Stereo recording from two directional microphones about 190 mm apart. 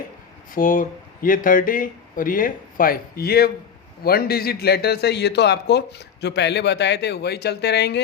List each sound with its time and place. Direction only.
0.5 s a man's voice: 45° left (ahead or behind); by 8.0 s 60° left (ahead or behind)